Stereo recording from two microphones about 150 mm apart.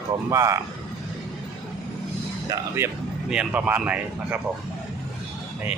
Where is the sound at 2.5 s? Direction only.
20° right (ahead or behind).